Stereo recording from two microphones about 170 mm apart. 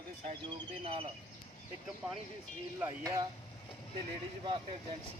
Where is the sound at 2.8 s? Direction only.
20° right (ahead or behind).